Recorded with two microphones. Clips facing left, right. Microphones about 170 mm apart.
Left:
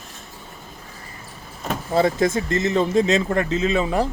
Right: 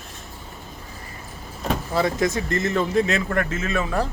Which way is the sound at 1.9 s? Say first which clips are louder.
Left 4 dB; 25° left (ahead or behind).